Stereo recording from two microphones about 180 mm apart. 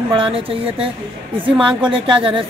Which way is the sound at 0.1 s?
30° right (ahead or behind).